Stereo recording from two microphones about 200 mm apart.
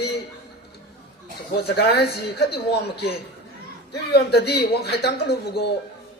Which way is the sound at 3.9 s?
55° left (ahead or behind).